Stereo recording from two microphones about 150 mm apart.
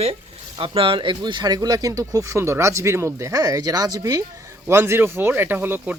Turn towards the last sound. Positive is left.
turn(degrees=-10)  # may be behind; listen again after turning